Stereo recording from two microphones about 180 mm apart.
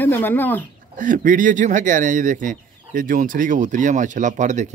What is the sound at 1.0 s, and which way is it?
Speech, 45° right (ahead or behind).